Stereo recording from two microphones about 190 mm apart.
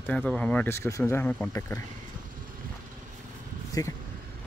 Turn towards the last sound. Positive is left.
turn(degrees=20)  # may be behind; listen again after turning